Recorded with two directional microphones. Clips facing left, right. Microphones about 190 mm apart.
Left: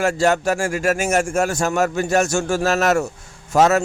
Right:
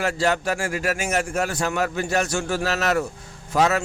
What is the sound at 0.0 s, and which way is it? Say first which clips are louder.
Speech: left 5 dB; 45° left (ahead or behind).